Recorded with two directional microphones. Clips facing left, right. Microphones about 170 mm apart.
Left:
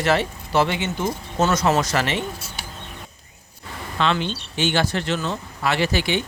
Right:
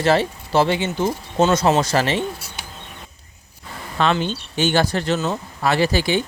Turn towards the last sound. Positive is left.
turn(degrees=-35)  # may be behind; listen again after turning